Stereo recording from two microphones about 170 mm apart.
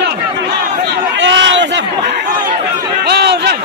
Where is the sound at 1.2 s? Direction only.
90° right.